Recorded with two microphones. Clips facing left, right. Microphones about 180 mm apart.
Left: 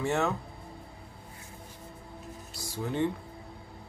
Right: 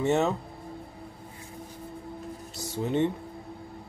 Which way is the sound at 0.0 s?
20° right (ahead or behind).